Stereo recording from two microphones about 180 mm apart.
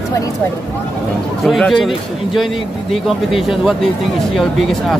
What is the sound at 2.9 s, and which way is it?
Speech, centre (ahead or behind).